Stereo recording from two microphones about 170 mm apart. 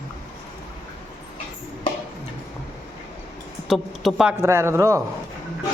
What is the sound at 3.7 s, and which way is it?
Speech, centre (ahead or behind).